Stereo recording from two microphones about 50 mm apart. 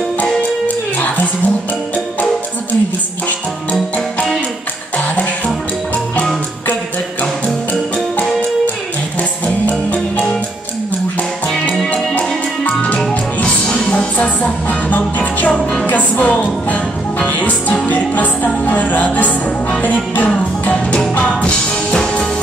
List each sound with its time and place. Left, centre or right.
0.9 s music: left
9.7 s music: left
11.9 s music: left
13.8 s music: left